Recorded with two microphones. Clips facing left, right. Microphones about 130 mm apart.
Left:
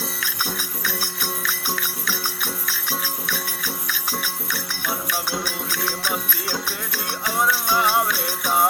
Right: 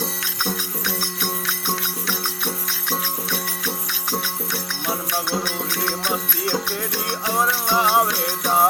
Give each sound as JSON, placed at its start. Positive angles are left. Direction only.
{"t": 2.9, "sound": "music", "side_deg": -25}
{"t": 4.9, "sound": "music", "side_deg": -25}
{"t": 6.9, "sound": "music", "side_deg": -25}